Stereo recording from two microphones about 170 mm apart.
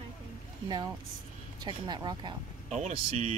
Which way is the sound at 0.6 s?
25° right (ahead or behind).